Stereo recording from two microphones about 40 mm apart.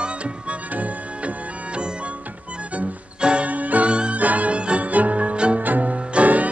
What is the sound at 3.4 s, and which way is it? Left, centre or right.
Music, right.